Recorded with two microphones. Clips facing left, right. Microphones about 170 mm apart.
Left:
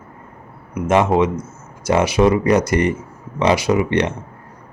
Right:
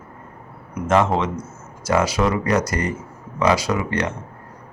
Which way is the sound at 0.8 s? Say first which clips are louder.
Left 3 dB; 15° left (ahead or behind).